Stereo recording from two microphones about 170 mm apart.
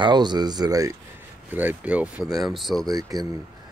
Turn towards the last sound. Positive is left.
turn(degrees=-20)  # may be behind; listen again after turning